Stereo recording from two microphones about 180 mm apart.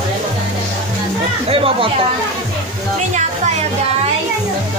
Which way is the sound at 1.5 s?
30° right (ahead or behind).